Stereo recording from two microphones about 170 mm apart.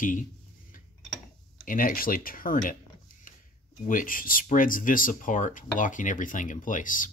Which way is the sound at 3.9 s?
55° left (ahead or behind).